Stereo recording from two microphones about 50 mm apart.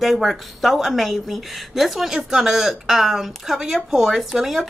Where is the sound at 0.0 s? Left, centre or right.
Centre.